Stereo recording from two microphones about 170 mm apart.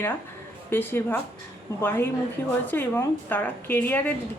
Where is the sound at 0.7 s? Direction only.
10° left (ahead or behind).